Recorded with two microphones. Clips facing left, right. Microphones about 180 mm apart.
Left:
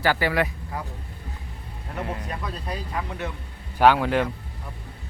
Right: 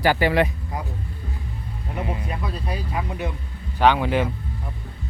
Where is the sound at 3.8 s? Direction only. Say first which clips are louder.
Even; 5° left (ahead or behind).